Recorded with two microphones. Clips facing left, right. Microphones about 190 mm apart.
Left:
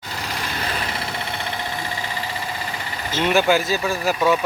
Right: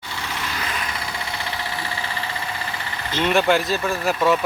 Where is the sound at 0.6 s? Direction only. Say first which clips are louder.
Left 4 dB; 30° left (ahead or behind).